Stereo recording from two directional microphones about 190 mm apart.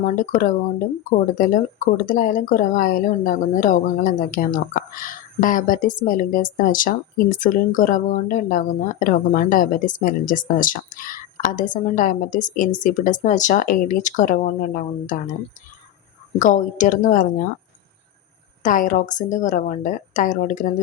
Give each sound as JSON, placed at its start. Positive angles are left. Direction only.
{"t": 0.0, "sound": "speech", "side_deg": 40}
{"t": 16.4, "sound": "speech", "side_deg": 40}
{"t": 18.6, "sound": "speech", "side_deg": 45}